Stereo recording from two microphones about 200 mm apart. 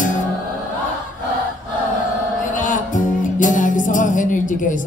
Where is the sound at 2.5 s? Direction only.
40° left (ahead or behind).